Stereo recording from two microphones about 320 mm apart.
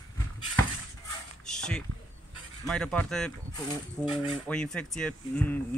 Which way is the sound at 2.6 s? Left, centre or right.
Centre.